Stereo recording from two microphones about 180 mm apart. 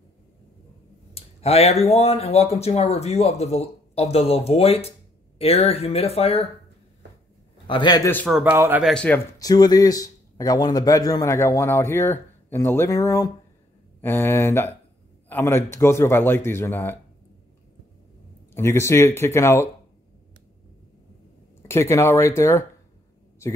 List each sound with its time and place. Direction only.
1.1 s speech: 35° left (ahead or behind)
7.6 s speech: 25° left (ahead or behind)
8.3 s speech: 5° right (ahead or behind)
8.8 s speech: 5° left (ahead or behind)
9.4 s speech: 20° left (ahead or behind)
18.5 s speech: 15° left (ahead or behind)
21.6 s speech: 15° left (ahead or behind)